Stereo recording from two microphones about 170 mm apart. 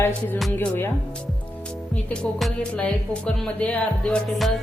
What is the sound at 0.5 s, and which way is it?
Music, 10° left (ahead or behind).